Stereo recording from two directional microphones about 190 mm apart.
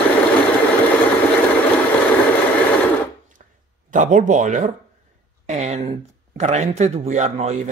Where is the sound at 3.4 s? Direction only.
40° right (ahead or behind).